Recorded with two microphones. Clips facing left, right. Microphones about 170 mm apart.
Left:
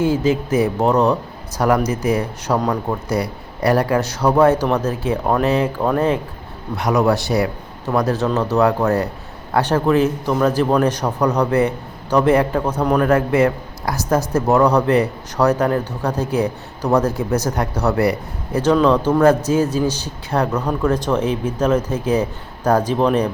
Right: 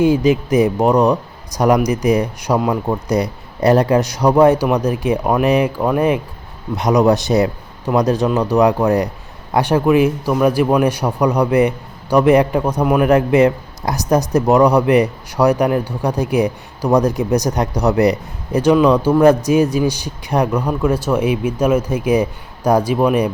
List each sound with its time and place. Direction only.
0.0 s a man's voice: 15° right (ahead or behind)